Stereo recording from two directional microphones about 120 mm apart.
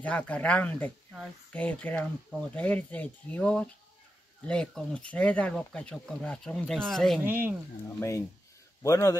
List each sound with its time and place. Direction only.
0.0 s speech: 10° left (ahead or behind)
7.2 s speech: 15° right (ahead or behind)
8.8 s a man's voice: 25° left (ahead or behind)